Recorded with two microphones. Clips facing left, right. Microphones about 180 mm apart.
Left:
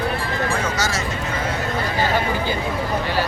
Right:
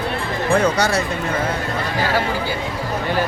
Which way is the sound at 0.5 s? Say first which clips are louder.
Right 7 dB; 60° right (ahead or behind).